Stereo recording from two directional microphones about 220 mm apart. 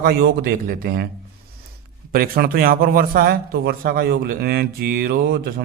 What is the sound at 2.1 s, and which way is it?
A man's voice, 40° right (ahead or behind).